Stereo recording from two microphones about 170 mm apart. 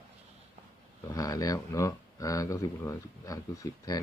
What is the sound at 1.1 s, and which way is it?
Speech, 20° left (ahead or behind).